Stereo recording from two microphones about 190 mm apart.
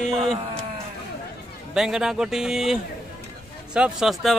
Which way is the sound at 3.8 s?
5° right (ahead or behind).